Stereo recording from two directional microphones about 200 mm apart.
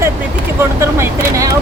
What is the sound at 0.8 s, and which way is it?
Speech, 15° right (ahead or behind).